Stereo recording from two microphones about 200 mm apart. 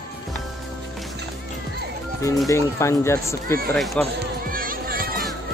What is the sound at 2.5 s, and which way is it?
Speech, 15° left (ahead or behind).